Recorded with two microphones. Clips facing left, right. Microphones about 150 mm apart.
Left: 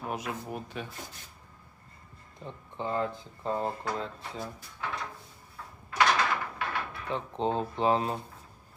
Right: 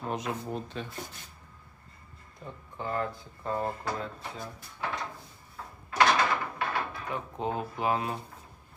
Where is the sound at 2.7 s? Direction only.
20° left (ahead or behind).